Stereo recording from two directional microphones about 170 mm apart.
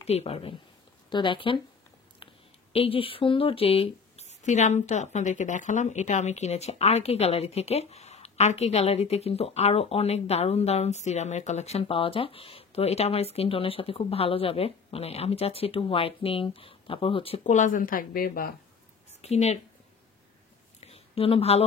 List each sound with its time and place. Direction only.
0.0 s speech: 35° left (ahead or behind)
2.7 s speech: 35° left (ahead or behind)
17.4 s speech: 45° left (ahead or behind)
19.2 s speech: 40° left (ahead or behind)
20.8 s a sound: 35° left (ahead or behind)